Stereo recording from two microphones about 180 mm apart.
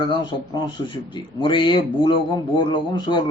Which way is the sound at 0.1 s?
25° left (ahead or behind).